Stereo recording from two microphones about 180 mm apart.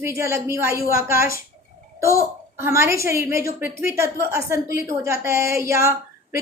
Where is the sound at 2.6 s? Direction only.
15° right (ahead or behind).